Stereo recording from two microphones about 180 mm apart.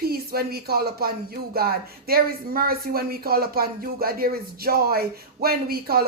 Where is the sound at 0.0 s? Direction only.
55° right (ahead or behind).